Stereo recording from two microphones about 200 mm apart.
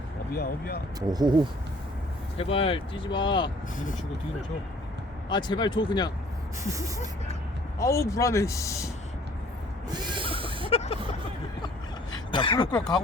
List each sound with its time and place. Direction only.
0.3 s speech: 50° left (ahead or behind)
0.9 s speech: 20° right (ahead or behind)
2.4 s speech: 30° left (ahead or behind)
5.3 s speech: 20° left (ahead or behind)
6.7 s speech: 15° right (ahead or behind)
7.8 s speech: 15° left (ahead or behind)
9.9 s a sound: 20° right (ahead or behind)
10.7 s vehicle: 30° left (ahead or behind)
12.1 s a sound: 25° left (ahead or behind)